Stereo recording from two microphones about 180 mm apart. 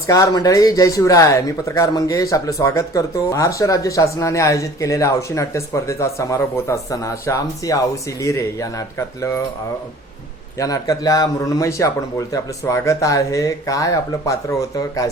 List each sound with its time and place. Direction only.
0.1 s speech: 15° left (ahead or behind)
10.6 s speech: 20° left (ahead or behind)